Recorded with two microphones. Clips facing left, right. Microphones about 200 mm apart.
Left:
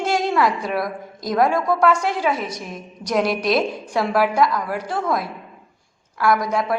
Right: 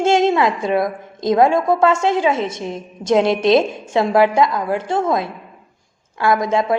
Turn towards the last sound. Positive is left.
turn(degrees=-25)  # may be behind; listen again after turning